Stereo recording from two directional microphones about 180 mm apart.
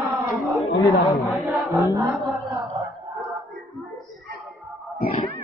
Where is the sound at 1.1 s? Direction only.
Centre (ahead or behind).